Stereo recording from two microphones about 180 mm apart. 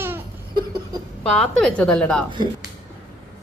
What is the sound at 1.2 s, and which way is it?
A woman's voice, 5° left (ahead or behind).